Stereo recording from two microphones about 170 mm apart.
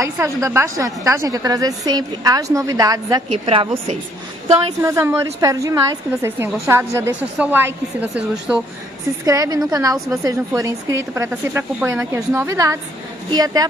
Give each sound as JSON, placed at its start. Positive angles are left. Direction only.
{"t": 0.0, "sound": "a woman's voice", "side_deg": -15}
{"t": 3.4, "sound": "a woman's voice", "side_deg": -35}
{"t": 4.8, "sound": "speech", "side_deg": -15}
{"t": 9.2, "sound": "a woman's voice", "side_deg": -20}